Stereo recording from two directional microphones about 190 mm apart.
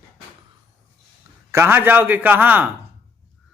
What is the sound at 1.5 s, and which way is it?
A man's voice, 10° right (ahead or behind).